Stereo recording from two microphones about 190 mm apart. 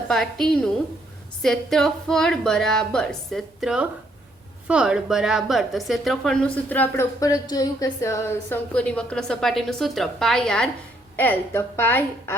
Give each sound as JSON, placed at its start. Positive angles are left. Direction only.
{"t": 0.1, "sound": "a woman's voice", "side_deg": 0}